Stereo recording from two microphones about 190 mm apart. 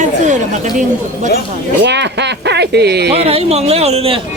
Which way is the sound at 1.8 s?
65° right (ahead or behind).